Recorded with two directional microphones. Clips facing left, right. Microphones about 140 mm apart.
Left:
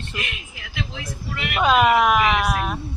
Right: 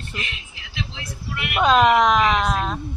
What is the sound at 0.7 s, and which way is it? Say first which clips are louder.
Vehicle: left 2 dB; 50° left (ahead or behind).